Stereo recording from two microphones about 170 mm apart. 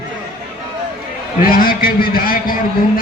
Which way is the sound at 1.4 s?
55° left (ahead or behind).